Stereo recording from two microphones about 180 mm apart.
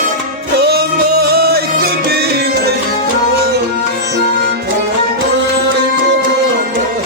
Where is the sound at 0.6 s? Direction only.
65° right (ahead or behind).